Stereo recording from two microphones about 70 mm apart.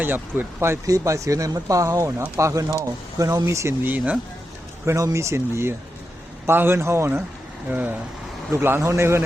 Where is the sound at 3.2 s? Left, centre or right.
Right.